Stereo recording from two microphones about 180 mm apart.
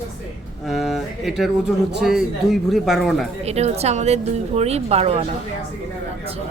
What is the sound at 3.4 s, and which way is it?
Speech, 35° right (ahead or behind).